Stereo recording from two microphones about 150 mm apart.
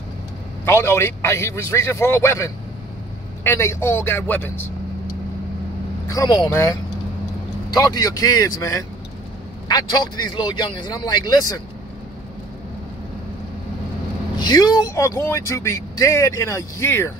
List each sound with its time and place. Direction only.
0.7 s a man's voice: 15° left (ahead or behind)
6.0 s speech: 25° left (ahead or behind)
6.5 s a man's voice: 15° left (ahead or behind)
14.4 s speech: 25° left (ahead or behind)